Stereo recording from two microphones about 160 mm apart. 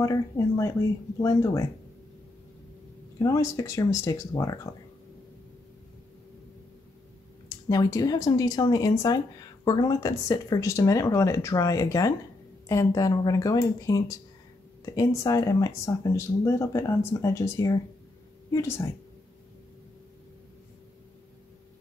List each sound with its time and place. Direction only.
0.0 s speech: 20° left (ahead or behind)
3.2 s speech: 20° left (ahead or behind)
7.4 s speech: 20° left (ahead or behind)